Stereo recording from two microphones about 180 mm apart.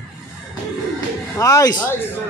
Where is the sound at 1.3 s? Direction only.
20° left (ahead or behind).